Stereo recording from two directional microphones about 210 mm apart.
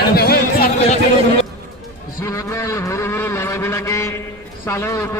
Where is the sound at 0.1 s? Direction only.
50° left (ahead or behind).